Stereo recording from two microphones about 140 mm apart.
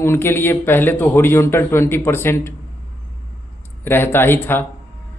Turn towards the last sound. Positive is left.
turn(degrees=15)  # may be behind; listen again after turning